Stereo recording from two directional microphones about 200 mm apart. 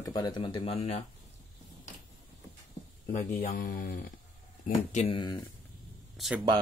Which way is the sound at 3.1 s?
45° left (ahead or behind).